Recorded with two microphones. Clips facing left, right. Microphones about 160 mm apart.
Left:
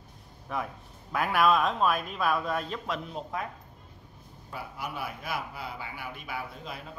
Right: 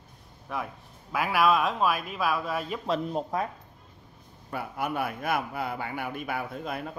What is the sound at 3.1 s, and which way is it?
Speech, 35° right (ahead or behind).